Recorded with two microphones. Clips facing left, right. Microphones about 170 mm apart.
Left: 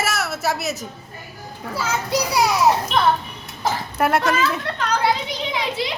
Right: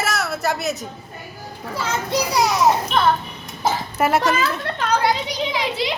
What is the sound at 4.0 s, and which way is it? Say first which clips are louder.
Speech: right 1 dB; centre (ahead or behind).